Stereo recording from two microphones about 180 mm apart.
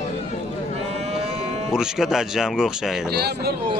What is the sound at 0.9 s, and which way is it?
Cattle, 35° right (ahead or behind).